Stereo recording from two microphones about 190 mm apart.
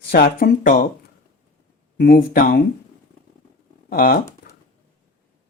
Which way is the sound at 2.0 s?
50° left (ahead or behind).